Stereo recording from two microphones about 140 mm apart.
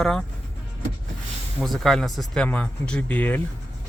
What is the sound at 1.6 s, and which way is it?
Speech, centre (ahead or behind).